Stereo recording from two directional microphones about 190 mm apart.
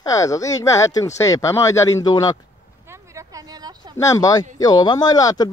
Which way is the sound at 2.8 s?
15° right (ahead or behind).